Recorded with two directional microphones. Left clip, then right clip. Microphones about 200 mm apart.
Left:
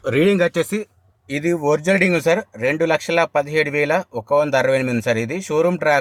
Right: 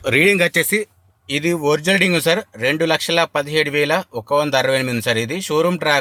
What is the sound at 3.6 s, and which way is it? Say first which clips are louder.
Speech: right 1 dB; 80° right.